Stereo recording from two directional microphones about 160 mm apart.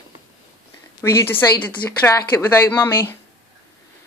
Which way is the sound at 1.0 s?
15° left (ahead or behind).